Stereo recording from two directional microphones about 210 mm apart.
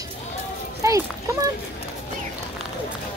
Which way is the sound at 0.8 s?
15° right (ahead or behind).